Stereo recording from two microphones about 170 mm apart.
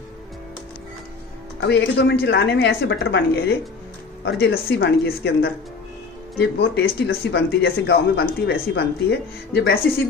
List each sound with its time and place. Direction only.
1.6 s speech: 90° left; by 9.8 s 75° left (ahead or behind)